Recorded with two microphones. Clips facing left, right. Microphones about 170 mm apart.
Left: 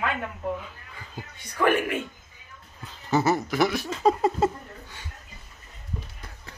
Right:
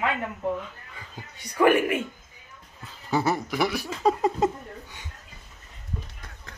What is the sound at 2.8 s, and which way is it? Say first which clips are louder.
Speech: left 2 dB; centre (ahead or behind).